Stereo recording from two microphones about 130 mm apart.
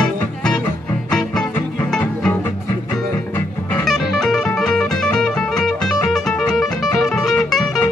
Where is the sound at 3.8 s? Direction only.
Centre (ahead or behind).